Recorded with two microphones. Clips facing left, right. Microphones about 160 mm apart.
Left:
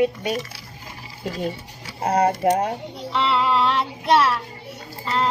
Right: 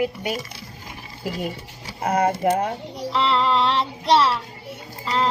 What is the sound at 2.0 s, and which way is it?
Speech, 30° left (ahead or behind).